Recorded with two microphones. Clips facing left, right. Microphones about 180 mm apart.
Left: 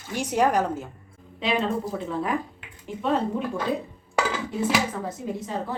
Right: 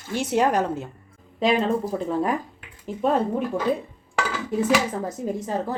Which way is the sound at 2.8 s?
45° right (ahead or behind).